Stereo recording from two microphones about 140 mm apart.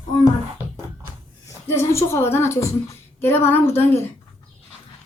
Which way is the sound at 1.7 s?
20° left (ahead or behind).